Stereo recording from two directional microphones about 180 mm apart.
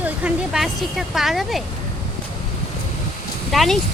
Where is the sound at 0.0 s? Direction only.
5° right (ahead or behind).